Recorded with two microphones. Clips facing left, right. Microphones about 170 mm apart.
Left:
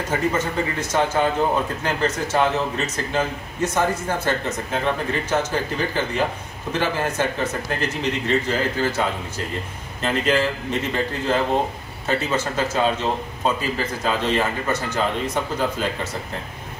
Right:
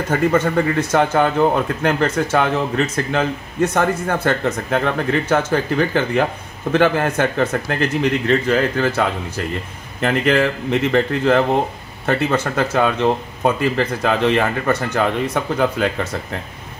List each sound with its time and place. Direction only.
0.3 s speech: 60° right (ahead or behind)
10.0 s speech: 60° right (ahead or behind)